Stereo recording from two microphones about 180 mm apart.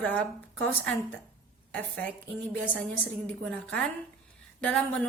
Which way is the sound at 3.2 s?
5° left (ahead or behind).